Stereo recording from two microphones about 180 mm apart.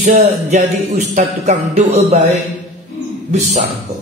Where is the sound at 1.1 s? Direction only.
40° right (ahead or behind).